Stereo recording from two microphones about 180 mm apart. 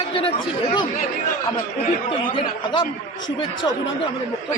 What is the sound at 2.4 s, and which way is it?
Speech, 25° left (ahead or behind).